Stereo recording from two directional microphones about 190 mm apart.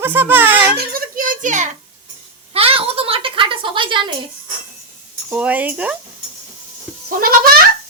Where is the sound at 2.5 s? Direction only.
30° right (ahead or behind).